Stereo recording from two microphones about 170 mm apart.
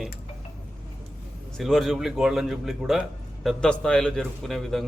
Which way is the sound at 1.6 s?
Centre (ahead or behind).